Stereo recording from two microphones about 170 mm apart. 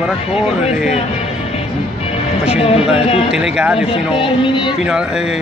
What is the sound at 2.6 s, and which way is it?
Speech, 35° left (ahead or behind).